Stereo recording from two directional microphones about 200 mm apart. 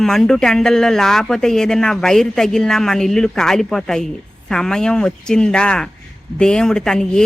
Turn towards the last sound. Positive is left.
turn(degrees=5)  # may be behind; listen again after turning